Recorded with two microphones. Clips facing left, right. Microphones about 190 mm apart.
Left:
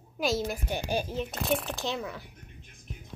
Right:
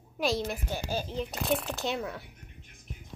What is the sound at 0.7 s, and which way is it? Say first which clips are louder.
Speech: left 3 dB; 15° left (ahead or behind).